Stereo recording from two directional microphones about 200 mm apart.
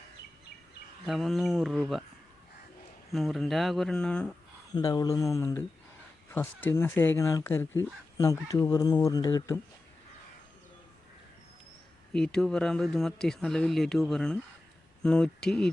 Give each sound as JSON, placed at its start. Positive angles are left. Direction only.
{"t": 1.0, "sound": "speech", "side_deg": 0}
{"t": 3.1, "sound": "speech", "side_deg": 0}
{"t": 4.7, "sound": "speech", "side_deg": 20}
{"t": 12.1, "sound": "speech", "side_deg": 5}